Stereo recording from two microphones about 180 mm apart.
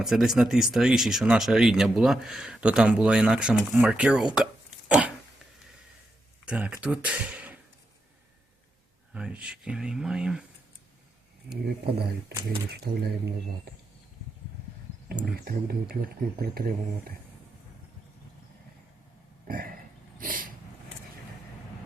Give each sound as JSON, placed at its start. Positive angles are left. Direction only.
{"t": 0.0, "sound": "speech", "side_deg": 0}
{"t": 4.9, "sound": "a sound", "side_deg": -5}
{"t": 6.4, "sound": "speech", "side_deg": -5}
{"t": 9.1, "sound": "speech", "side_deg": -5}
{"t": 12.7, "sound": "speech", "side_deg": -65}
{"t": 15.2, "sound": "speech", "side_deg": -55}
{"t": 19.5, "sound": "a sound", "side_deg": -55}